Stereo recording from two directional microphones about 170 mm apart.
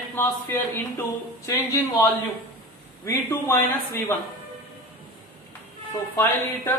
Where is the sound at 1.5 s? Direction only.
20° left (ahead or behind).